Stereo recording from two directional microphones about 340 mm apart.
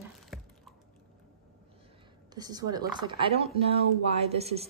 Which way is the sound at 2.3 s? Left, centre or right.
Centre.